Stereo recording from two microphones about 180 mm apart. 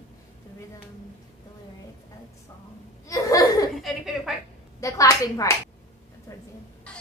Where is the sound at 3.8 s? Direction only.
Centre (ahead or behind).